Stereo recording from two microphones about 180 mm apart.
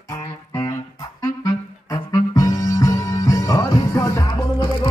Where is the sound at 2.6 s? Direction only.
20° left (ahead or behind).